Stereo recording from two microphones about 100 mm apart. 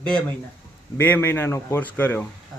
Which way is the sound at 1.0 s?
20° left (ahead or behind).